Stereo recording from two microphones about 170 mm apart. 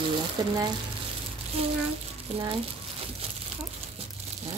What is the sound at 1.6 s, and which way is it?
Speech, 35° right (ahead or behind).